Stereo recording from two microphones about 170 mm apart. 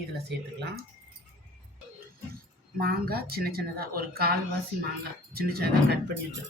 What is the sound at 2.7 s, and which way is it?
Speech, 65° right (ahead or behind).